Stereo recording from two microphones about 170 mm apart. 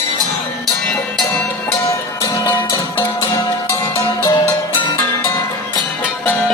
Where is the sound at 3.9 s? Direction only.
20° left (ahead or behind).